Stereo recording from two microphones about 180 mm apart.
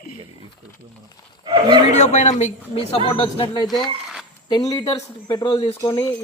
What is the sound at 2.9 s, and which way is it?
Speech, 25° left (ahead or behind).